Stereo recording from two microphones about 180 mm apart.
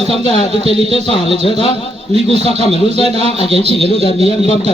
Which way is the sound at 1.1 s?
30° left (ahead or behind).